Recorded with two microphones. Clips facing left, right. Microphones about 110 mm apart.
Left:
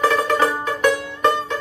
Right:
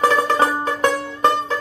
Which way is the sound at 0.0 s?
30° right (ahead or behind).